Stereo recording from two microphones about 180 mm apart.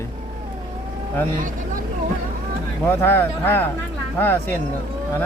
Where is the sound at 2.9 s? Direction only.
10° left (ahead or behind).